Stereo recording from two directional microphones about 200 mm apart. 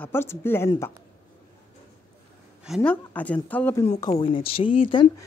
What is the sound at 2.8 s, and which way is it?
Speech, 5° left (ahead or behind).